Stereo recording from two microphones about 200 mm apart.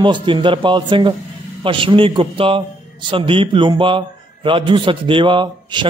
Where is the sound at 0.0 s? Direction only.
25° right (ahead or behind).